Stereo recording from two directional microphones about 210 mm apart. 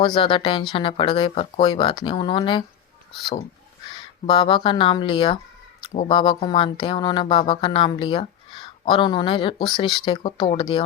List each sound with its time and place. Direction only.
0.0 s speech: 25° left (ahead or behind)
3.8 s speech: 25° left (ahead or behind)